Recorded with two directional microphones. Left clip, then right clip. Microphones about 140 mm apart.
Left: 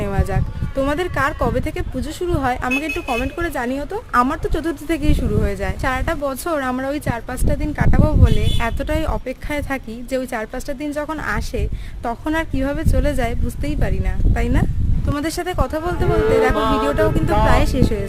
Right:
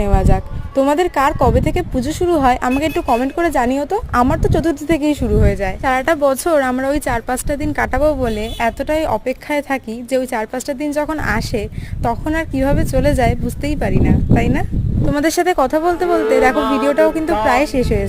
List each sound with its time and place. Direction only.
0.0 s a sound: 30° right (ahead or behind)
0.8 s speech: 30° right (ahead or behind)
5.8 s speech: 40° right (ahead or behind)
8.8 s speech: 20° right (ahead or behind)
12.2 s music: 5° right (ahead or behind)
12.5 s speech: 25° right (ahead or behind)
15.1 s speech: 50° right (ahead or behind)
16.0 s music: centre (ahead or behind)
17.5 s speech: 30° right (ahead or behind)